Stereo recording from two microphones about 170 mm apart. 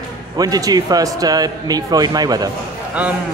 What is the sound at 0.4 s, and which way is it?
A man's voice, 20° right (ahead or behind).